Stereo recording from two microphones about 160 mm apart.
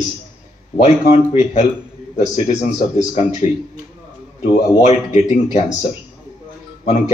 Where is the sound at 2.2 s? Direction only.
45° left (ahead or behind).